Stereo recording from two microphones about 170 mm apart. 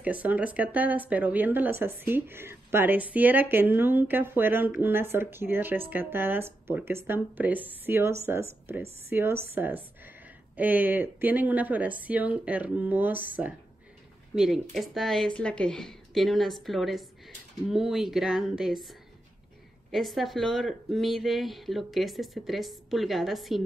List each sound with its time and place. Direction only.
0.0 s speech: 10° right (ahead or behind)